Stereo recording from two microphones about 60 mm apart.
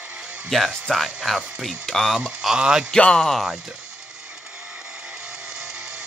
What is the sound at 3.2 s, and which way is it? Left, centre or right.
Speech, centre.